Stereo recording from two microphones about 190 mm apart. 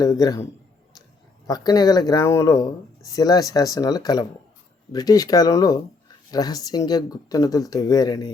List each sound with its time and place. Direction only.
0.0 s speech: 20° left (ahead or behind)
1.5 s speech: 20° left (ahead or behind)